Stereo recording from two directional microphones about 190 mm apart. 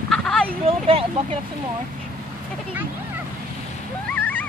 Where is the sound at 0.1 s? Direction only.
5° left (ahead or behind).